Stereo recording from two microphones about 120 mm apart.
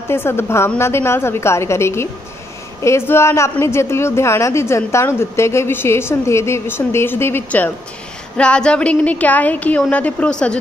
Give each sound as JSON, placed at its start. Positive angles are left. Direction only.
{"t": 0.1, "sound": "a woman's voice", "side_deg": 20}